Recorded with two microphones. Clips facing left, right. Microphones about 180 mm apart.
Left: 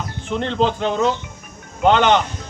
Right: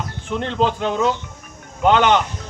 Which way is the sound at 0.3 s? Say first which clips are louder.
Left 1 dB; 5° right (ahead or behind).